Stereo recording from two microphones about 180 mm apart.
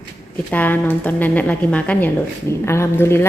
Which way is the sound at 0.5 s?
10° left (ahead or behind).